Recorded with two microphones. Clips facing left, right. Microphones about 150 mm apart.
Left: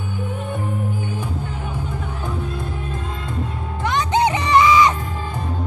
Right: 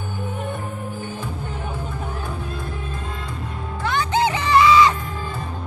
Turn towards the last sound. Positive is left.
turn(degrees=20)  # may be behind; listen again after turning